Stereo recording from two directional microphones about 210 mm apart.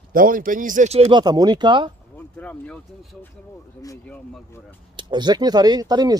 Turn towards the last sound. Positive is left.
turn(degrees=-20)  # may be behind; listen again after turning